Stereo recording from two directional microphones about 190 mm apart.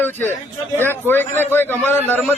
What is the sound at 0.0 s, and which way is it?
A man's voice, 10° left (ahead or behind).